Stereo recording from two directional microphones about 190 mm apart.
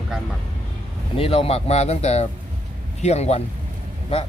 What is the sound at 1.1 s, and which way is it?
Speech, 30° left (ahead or behind).